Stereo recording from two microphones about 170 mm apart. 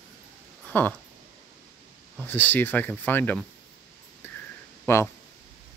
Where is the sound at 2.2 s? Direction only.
10° left (ahead or behind).